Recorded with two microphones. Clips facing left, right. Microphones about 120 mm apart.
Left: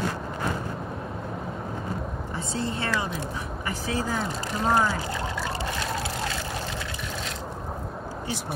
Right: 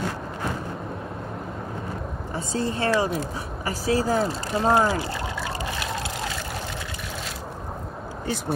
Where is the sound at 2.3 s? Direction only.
40° right (ahead or behind).